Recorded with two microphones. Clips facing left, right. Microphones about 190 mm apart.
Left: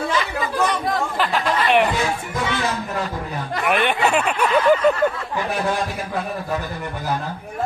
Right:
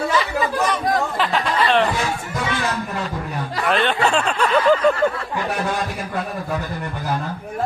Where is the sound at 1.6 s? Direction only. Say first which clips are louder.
Even; 15° left (ahead or behind).